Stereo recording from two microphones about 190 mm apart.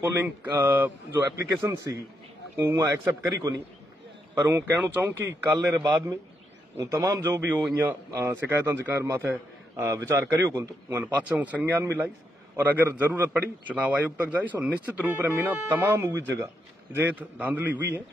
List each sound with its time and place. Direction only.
0.0 s speech: 10° right (ahead or behind)